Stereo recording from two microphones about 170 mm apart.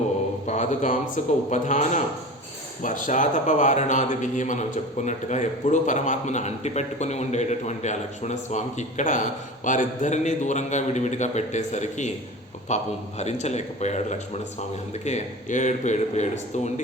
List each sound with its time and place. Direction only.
0.4 s a man's voice: 45° left (ahead or behind)